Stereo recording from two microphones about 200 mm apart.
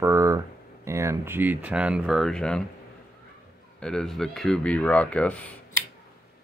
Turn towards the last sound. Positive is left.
turn(degrees=5)  # may be behind; listen again after turning